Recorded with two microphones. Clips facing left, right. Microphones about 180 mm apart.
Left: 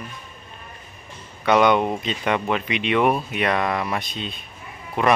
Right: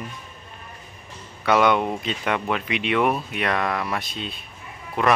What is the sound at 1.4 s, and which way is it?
Speech, 5° right (ahead or behind).